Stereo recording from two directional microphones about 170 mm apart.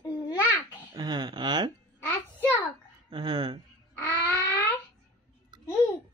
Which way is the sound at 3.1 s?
25° right (ahead or behind).